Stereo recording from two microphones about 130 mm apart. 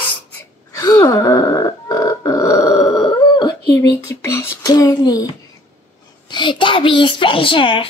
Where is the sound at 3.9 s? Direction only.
20° left (ahead or behind); by 7.9 s 40° left (ahead or behind).